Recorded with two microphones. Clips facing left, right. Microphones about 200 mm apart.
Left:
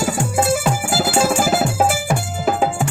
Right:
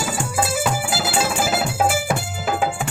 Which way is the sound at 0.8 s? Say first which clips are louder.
Left 5 dB; 45° left (ahead or behind).